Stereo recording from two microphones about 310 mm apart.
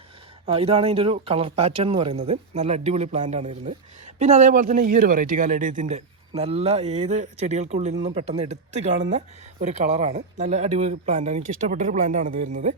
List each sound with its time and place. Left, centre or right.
0.4 s a man's voice: centre